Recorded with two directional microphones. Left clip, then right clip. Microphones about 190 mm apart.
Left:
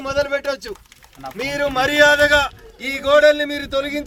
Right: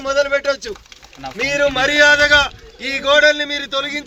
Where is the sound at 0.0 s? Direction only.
25° left (ahead or behind).